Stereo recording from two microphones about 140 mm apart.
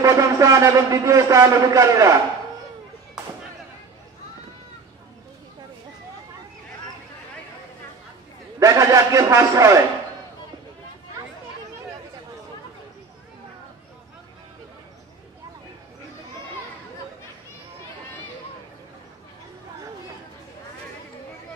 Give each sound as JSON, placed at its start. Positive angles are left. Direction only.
{"t": 0.0, "sound": "a man's voice", "side_deg": -20}
{"t": 8.5, "sound": "a man's voice", "side_deg": -25}